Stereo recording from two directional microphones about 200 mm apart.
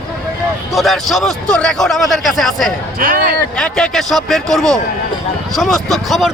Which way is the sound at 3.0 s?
45° right (ahead or behind).